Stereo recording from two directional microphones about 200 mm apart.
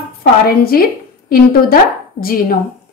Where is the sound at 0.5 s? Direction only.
45° left (ahead or behind).